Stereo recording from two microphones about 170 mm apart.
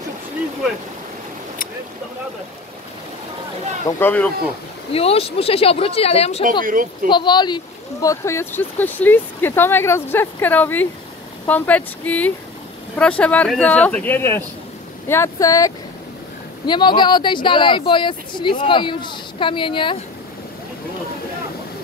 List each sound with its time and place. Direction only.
4.0 s speech: 10° left (ahead or behind)
4.9 s speech: 35° left (ahead or behind)
6.6 s speech: 55° right (ahead or behind)
7.1 s speech: 25° left (ahead or behind)